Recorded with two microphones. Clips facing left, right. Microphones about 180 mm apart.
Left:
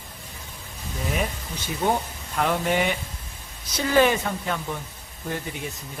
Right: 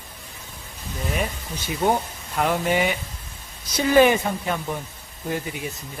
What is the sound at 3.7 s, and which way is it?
Speech, 15° right (ahead or behind).